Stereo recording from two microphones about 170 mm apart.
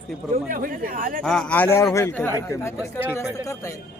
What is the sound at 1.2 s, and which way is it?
A man's voice, 5° left (ahead or behind).